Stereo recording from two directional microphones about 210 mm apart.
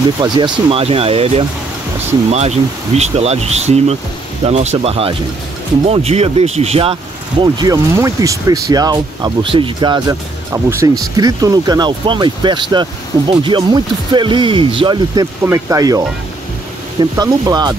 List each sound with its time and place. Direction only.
0.2 s speech: 25° right (ahead or behind)
17.0 s speech: 20° right (ahead or behind)